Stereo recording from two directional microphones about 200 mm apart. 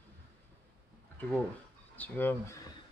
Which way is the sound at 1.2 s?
10° left (ahead or behind).